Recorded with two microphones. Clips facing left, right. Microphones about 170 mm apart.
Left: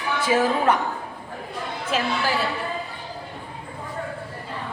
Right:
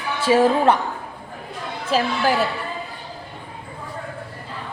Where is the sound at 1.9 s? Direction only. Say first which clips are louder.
Right 5 dB; 35° right (ahead or behind).